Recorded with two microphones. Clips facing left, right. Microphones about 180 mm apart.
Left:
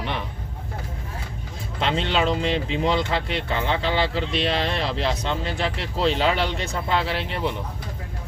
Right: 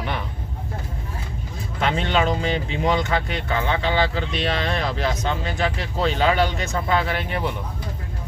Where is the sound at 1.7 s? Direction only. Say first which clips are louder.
Right 1 dB; 25° left (ahead or behind).